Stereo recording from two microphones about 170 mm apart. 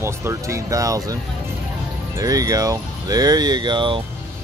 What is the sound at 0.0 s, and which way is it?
Speech, 15° right (ahead or behind).